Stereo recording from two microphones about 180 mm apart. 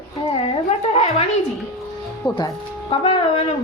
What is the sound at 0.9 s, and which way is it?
Speech, 35° left (ahead or behind).